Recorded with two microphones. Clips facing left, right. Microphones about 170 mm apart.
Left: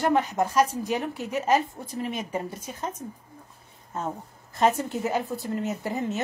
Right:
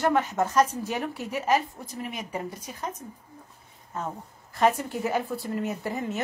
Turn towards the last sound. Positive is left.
turn(degrees=20)  # may be behind; listen again after turning